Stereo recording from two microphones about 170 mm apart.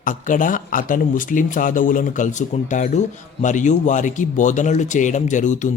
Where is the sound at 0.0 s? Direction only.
50° left (ahead or behind).